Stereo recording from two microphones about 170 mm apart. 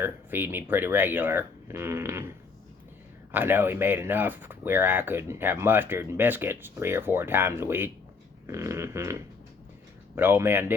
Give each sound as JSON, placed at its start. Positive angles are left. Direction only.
{"t": 0.0, "sound": "speech", "side_deg": -10}
{"t": 3.3, "sound": "speech", "side_deg": -10}